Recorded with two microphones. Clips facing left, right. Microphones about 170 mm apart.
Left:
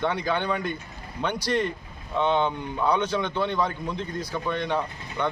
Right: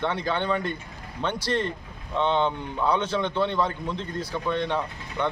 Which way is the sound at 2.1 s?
5° left (ahead or behind).